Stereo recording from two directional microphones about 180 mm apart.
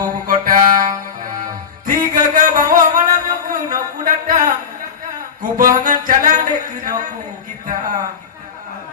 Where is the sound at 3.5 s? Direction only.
50° right (ahead or behind).